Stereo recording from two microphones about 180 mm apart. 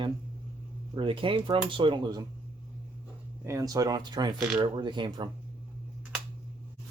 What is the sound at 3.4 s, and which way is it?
Speech, 15° right (ahead or behind).